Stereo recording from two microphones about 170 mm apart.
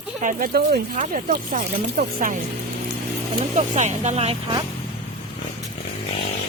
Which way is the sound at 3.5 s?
40° right (ahead or behind).